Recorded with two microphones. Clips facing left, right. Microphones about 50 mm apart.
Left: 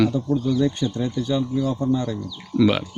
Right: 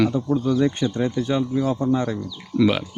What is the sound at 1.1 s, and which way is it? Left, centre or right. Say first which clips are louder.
Speech: right 1 dB; right.